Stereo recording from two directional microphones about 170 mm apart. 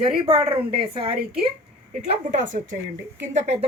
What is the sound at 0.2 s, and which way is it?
Speech, 30° right (ahead or behind).